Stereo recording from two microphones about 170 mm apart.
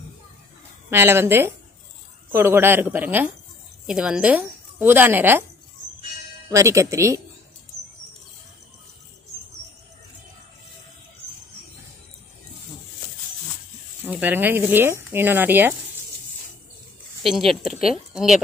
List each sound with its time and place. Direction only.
0.8 s a woman's voice: 15° right (ahead or behind)
6.5 s speech: 20° right (ahead or behind)
14.0 s speech: 10° right (ahead or behind)
17.2 s speech: centre (ahead or behind)